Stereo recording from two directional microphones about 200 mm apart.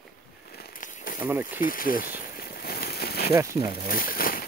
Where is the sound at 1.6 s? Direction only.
45° left (ahead or behind).